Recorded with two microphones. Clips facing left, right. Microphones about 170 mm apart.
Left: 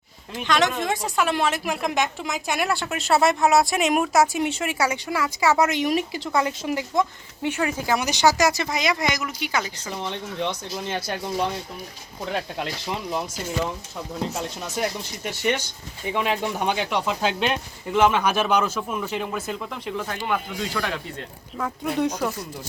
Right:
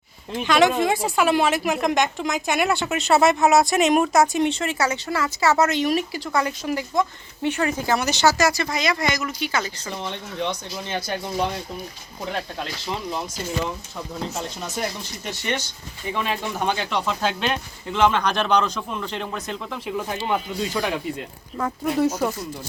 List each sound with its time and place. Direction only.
0.4 s a woman's voice: 5° right (ahead or behind); by 7.0 s 20° left (ahead or behind)
7.4 s speech: 10° left (ahead or behind)
13.1 s speech: 10° left (ahead or behind)
20.2 s speech: 20° right (ahead or behind)
21.6 s a woman's voice: 5° right (ahead or behind)